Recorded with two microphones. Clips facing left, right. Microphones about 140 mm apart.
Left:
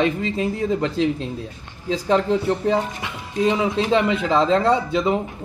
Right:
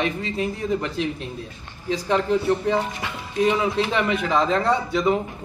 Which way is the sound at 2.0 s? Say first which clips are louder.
Left 2 dB; 25° left (ahead or behind).